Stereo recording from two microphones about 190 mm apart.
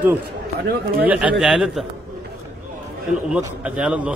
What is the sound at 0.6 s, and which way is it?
Speech, 65° right (ahead or behind).